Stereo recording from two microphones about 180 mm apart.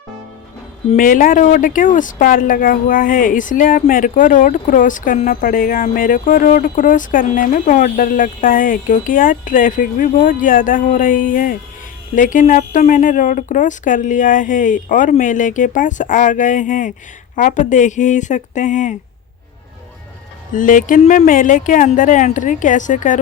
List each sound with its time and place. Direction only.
0.9 s speech: 50° left (ahead or behind)
20.5 s speech: 45° left (ahead or behind)